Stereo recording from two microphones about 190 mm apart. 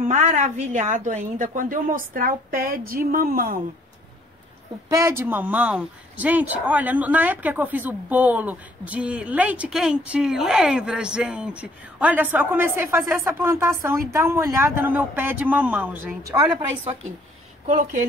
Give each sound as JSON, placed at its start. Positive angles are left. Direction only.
{"t": 0.0, "sound": "a woman's voice", "side_deg": -40}
{"t": 4.8, "sound": "speech", "side_deg": -15}
{"t": 17.6, "sound": "speech", "side_deg": -40}